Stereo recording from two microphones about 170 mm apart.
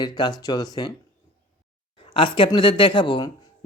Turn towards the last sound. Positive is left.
turn(degrees=30)  # may be behind; listen again after turning